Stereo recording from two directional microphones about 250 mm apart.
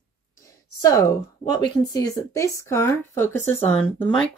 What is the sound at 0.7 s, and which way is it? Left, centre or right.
A woman's voice, centre.